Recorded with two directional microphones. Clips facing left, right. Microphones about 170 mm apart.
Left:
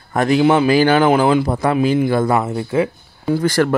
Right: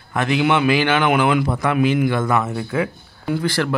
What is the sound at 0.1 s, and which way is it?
A man's voice, 40° left (ahead or behind).